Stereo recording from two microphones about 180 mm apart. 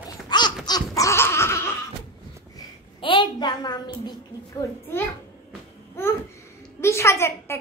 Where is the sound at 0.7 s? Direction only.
15° left (ahead or behind).